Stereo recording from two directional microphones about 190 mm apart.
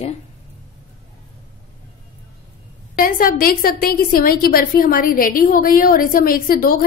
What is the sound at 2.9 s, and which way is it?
A woman's voice, 50° left (ahead or behind).